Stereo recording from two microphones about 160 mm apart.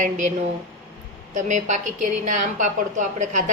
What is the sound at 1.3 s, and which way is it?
A woman's voice, 50° right (ahead or behind).